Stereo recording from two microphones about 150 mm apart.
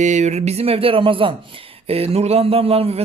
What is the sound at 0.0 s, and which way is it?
A man's voice, 50° right (ahead or behind).